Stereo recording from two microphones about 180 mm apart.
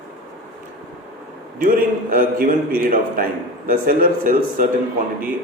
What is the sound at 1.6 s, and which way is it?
A man's voice, 50° right (ahead or behind).